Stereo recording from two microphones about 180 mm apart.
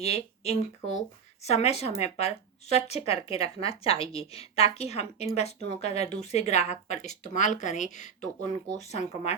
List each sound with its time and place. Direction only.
0.0 s speech: 35° left (ahead or behind)